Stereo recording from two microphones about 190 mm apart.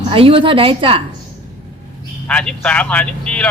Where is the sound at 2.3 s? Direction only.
5° left (ahead or behind).